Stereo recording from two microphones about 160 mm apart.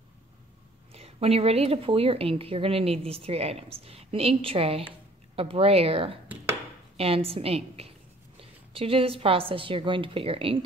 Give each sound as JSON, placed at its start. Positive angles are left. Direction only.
{"t": 0.9, "sound": "a woman's voice", "side_deg": -40}